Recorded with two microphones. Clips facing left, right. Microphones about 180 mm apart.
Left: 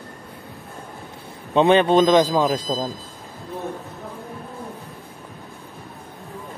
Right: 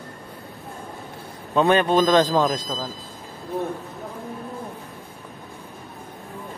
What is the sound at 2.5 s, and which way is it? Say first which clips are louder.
Speech: left 4 dB; 35° left (ahead or behind).